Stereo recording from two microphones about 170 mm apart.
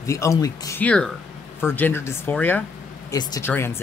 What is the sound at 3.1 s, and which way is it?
Speech, 20° left (ahead or behind).